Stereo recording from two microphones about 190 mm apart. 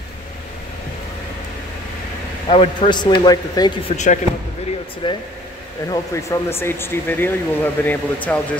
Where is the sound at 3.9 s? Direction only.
35° left (ahead or behind).